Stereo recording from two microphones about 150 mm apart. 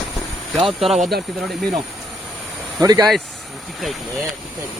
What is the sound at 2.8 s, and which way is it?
Speech, 25° right (ahead or behind).